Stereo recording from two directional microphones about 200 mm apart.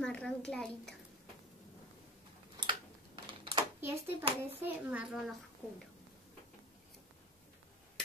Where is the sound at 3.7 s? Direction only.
10° right (ahead or behind).